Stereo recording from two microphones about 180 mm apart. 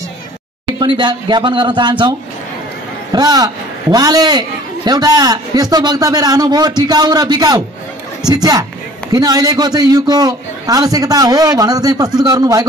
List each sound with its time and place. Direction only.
0.7 s a man's voice: 25° right (ahead or behind)